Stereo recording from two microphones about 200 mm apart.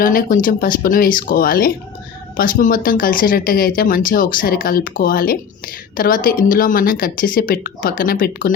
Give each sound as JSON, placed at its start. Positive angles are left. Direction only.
{"t": 0.0, "sound": "speech", "side_deg": 45}